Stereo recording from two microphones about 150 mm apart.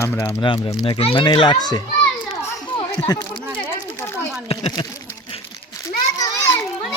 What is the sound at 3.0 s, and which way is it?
Speech, 25° left (ahead or behind).